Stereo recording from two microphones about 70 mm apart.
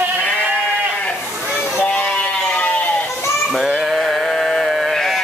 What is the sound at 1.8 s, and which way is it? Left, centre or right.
Sheep, centre.